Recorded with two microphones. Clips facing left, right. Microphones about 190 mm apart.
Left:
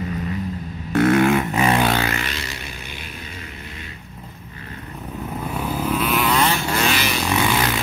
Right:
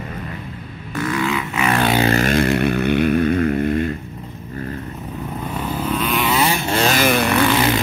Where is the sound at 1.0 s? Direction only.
60° left (ahead or behind); by 1.7 s 40° left (ahead or behind).